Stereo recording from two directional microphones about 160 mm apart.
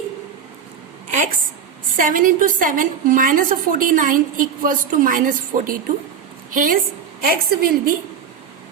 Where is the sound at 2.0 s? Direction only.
55° right (ahead or behind).